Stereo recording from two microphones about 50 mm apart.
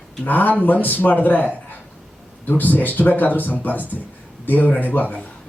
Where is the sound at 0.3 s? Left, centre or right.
Left.